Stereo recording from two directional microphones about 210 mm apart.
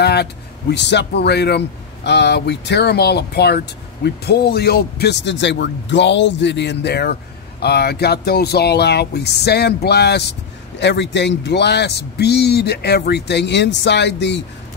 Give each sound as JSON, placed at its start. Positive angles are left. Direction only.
{"t": 0.0, "sound": "speech", "side_deg": 50}